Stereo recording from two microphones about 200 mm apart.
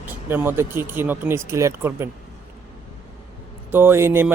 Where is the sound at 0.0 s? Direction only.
10° right (ahead or behind).